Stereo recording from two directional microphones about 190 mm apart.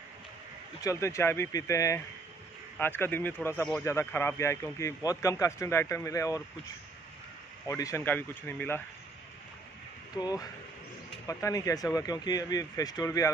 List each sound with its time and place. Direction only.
0.8 s a man's voice: 15° left (ahead or behind)
7.6 s a man's voice: 15° left (ahead or behind)
10.1 s speech: 20° left (ahead or behind)